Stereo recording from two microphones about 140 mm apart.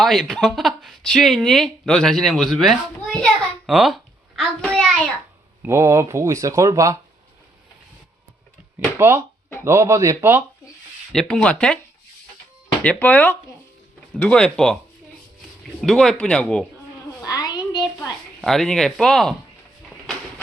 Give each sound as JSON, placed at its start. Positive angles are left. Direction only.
{"t": 0.0, "sound": "speech", "side_deg": 0}
{"t": 3.7, "sound": "a sound", "side_deg": 0}
{"t": 4.7, "sound": "speech", "side_deg": 5}
{"t": 5.6, "sound": "speech", "side_deg": -20}
{"t": 9.0, "sound": "speech", "side_deg": -15}
{"t": 11.1, "sound": "speech", "side_deg": 5}
{"t": 12.8, "sound": "speech", "side_deg": 10}
{"t": 15.8, "sound": "speech", "side_deg": 5}
{"t": 17.2, "sound": "a sound", "side_deg": 25}
{"t": 18.4, "sound": "speech", "side_deg": 0}